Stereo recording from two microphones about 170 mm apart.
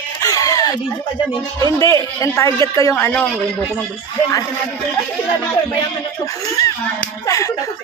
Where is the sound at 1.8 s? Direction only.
20° left (ahead or behind).